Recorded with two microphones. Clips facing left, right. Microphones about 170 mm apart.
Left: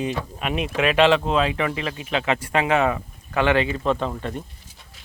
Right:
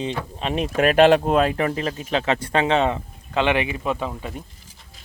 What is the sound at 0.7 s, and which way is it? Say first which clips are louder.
Speech: right 3 dB; 45° right (ahead or behind).